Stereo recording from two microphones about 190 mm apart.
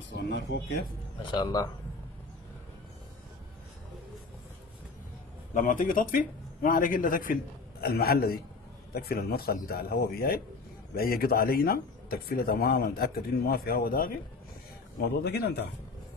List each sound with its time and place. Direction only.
0.1 s speech: 65° left (ahead or behind)
1.2 s speech: 25° left (ahead or behind)
5.5 s speech: 45° left (ahead or behind)